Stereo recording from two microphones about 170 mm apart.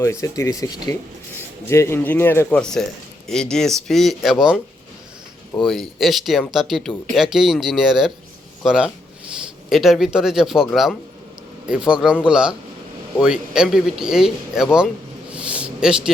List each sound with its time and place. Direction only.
0.0 s speech: 20° left (ahead or behind); by 4.6 s centre (ahead or behind)
5.6 s speech: centre (ahead or behind)
11.7 s speech: 5° right (ahead or behind)
15.3 s a sound: 5° right (ahead or behind)